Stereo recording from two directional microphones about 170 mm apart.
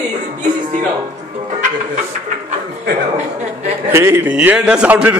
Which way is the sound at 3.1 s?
45° right (ahead or behind).